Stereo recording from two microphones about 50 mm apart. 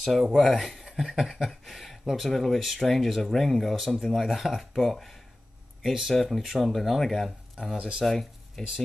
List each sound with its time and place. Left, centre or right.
0.0 s speech: centre
7.7 s speech: centre
8.0 s speech: centre